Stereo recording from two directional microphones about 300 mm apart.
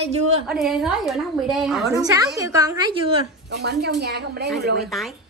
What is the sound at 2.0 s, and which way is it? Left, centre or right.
A woman's voice, centre.